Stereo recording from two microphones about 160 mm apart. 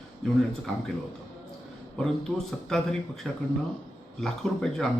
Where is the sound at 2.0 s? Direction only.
5° left (ahead or behind).